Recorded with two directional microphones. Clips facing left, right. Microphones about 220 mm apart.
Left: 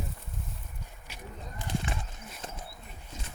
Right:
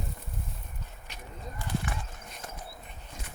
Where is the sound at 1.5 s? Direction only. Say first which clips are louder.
Even; 20° left (ahead or behind).